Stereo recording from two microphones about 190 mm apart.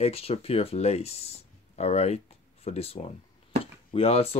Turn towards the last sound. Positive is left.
turn(degrees=30)  # may be behind; listen again after turning